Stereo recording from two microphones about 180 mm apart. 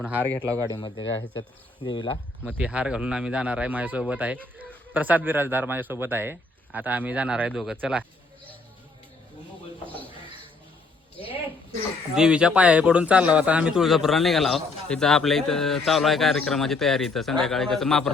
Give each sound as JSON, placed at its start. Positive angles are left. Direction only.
{"t": 0.0, "sound": "speech", "side_deg": -10}
{"t": 0.8, "sound": "speech", "side_deg": 25}
{"t": 2.5, "sound": "speech", "side_deg": -5}
{"t": 12.1, "sound": "speech", "side_deg": -5}